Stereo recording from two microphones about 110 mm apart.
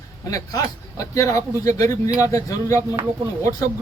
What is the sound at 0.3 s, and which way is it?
Speech, 30° left (ahead or behind).